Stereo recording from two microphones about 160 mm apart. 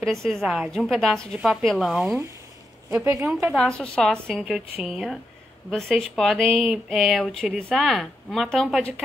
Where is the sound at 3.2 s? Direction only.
5° right (ahead or behind).